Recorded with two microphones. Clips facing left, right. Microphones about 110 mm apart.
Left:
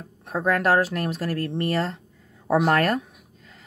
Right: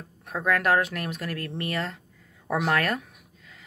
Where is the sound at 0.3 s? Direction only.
30° left (ahead or behind).